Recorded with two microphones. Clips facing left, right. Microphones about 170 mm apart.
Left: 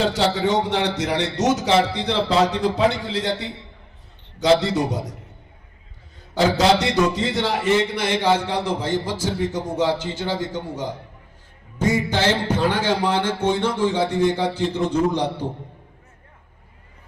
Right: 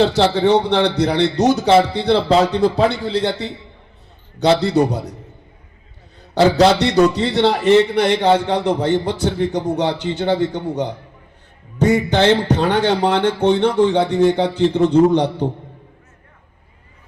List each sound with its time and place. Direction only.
0.0 s a man's voice: 70° right (ahead or behind)
4.6 s a man's voice: 65° right (ahead or behind)
6.3 s a man's voice: 70° right (ahead or behind)